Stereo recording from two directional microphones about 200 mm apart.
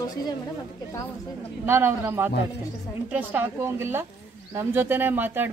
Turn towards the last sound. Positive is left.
turn(degrees=-10)  # may be behind; listen again after turning